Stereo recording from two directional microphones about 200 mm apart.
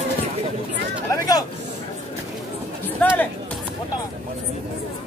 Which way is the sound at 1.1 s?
15° left (ahead or behind).